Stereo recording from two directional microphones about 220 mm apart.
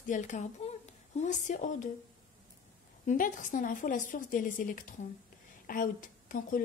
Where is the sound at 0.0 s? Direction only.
35° left (ahead or behind).